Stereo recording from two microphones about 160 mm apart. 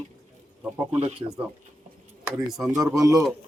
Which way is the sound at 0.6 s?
10° right (ahead or behind).